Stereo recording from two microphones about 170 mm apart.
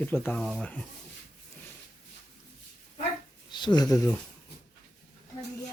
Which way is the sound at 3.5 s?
25° left (ahead or behind).